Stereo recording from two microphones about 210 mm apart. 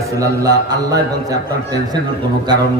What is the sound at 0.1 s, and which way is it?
A woman's voice, 15° right (ahead or behind).